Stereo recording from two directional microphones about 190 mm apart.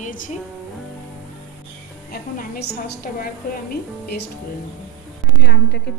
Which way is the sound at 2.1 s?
55° left (ahead or behind).